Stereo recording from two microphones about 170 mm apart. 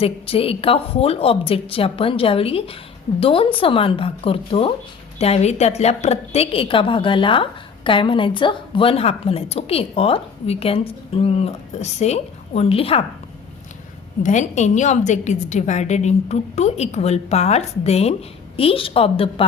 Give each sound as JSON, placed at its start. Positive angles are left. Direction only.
{"t": 0.0, "sound": "a woman's voice", "side_deg": 35}
{"t": 14.2, "sound": "a woman's voice", "side_deg": 45}